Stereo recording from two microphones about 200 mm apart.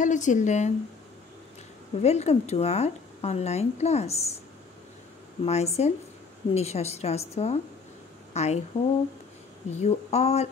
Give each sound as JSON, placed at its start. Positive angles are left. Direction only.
{"t": 0.0, "sound": "a woman's voice", "side_deg": 40}
{"t": 2.0, "sound": "a woman's voice", "side_deg": 35}
{"t": 5.4, "sound": "a woman's voice", "side_deg": 30}
{"t": 9.7, "sound": "a woman's voice", "side_deg": 35}